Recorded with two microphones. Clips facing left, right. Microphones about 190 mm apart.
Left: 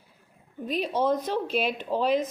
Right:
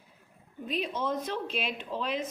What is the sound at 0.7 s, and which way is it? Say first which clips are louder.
A woman's voice: left 6 dB; 40° left (ahead or behind).